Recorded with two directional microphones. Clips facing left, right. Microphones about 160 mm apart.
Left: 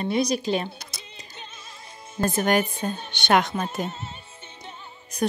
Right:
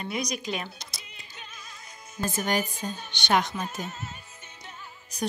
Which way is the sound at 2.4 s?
60° left (ahead or behind).